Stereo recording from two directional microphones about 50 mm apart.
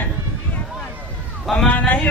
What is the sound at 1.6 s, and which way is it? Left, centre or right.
Speech, left.